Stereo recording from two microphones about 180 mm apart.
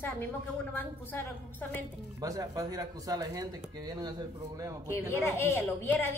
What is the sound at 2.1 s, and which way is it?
Speech, 20° right (ahead or behind).